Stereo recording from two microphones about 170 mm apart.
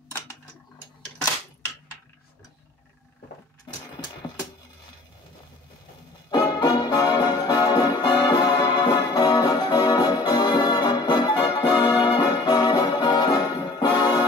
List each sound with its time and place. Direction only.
6.3 s music: 20° left (ahead or behind)